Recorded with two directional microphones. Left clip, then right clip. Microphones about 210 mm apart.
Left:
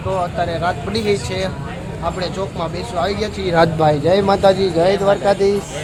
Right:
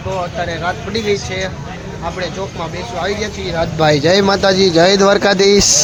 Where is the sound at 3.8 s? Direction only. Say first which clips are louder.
Right 3 dB; 15° right (ahead or behind); by 5.5 s 30° right (ahead or behind).